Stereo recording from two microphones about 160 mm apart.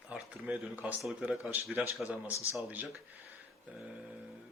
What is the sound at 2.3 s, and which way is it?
Speech, 20° left (ahead or behind).